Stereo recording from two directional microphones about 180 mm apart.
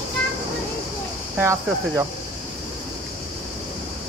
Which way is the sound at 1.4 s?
15° right (ahead or behind).